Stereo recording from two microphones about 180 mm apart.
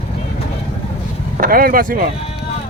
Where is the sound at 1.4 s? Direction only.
55° right (ahead or behind).